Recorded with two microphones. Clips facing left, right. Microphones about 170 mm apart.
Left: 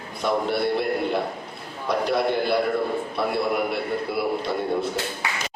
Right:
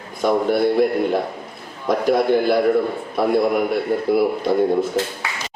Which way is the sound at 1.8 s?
50° right (ahead or behind).